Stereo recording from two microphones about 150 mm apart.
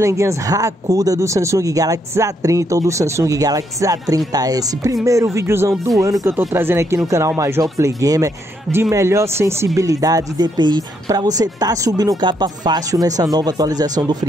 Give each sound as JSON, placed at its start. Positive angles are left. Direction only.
{"t": 0.0, "sound": "speech", "side_deg": -20}